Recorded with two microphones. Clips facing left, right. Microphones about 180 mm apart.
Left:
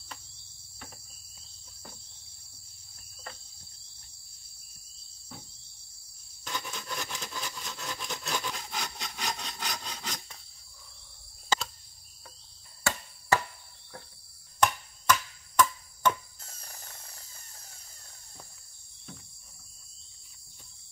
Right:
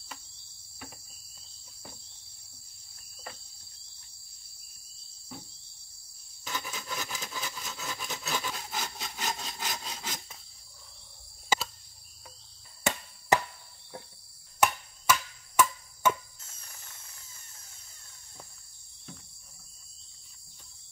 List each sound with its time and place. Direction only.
6.4 s a sound: centre (ahead or behind)
11.4 s cricket: 10° right (ahead or behind)
12.9 s chop: 20° right (ahead or behind)
13.3 s cricket: 20° right (ahead or behind)
14.6 s chop: 10° right (ahead or behind)
16.3 s tools: 35° left (ahead or behind)